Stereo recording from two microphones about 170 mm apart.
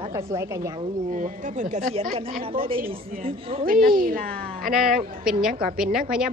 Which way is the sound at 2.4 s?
30° right (ahead or behind).